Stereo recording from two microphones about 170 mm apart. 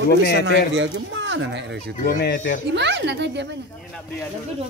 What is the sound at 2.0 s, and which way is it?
Speech, 80° left.